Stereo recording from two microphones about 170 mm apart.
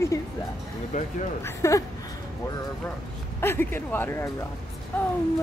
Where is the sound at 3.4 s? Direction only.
15° left (ahead or behind).